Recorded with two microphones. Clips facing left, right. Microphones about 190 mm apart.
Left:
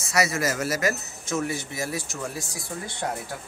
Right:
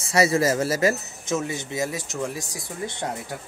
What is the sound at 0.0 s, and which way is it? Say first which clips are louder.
A woman's voice: right 5 dB; 30° right (ahead or behind).